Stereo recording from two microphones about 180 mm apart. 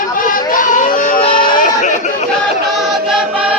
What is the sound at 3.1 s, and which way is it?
Choir, 5° right (ahead or behind).